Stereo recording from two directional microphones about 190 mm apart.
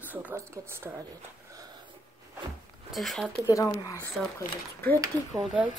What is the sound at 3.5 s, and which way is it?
Speech, 15° left (ahead or behind).